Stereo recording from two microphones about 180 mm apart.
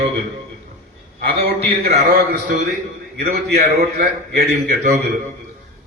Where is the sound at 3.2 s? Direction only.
60° right (ahead or behind).